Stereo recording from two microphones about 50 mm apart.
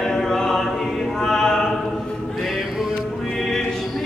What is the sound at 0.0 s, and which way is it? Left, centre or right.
Choir, centre.